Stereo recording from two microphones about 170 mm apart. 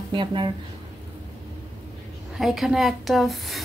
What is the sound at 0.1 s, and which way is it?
Speech, 30° right (ahead or behind).